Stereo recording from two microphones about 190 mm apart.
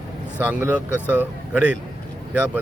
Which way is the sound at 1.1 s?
10° right (ahead or behind).